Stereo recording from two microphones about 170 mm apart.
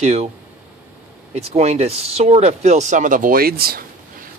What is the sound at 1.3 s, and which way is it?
Speech, 40° right (ahead or behind).